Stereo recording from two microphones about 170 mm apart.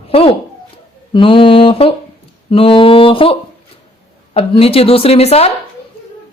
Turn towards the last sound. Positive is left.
turn(degrees=35)  # may be behind; listen again after turning